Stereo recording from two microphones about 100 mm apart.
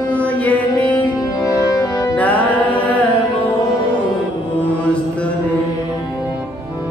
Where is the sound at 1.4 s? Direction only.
30° left (ahead or behind).